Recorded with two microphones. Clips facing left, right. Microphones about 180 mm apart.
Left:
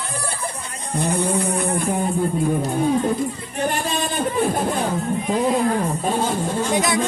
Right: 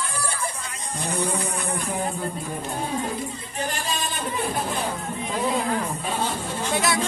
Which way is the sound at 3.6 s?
55° left (ahead or behind).